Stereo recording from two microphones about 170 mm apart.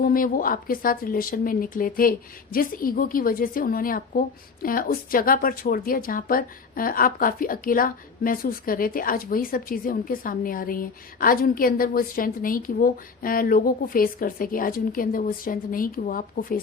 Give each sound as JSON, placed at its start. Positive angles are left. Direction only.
{"t": 0.0, "sound": "a woman's voice", "side_deg": 55}